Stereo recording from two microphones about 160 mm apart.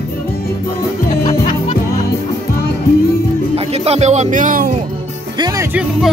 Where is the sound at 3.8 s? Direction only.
45° right (ahead or behind).